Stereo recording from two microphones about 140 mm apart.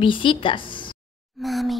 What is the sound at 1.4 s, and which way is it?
Speech, centre (ahead or behind).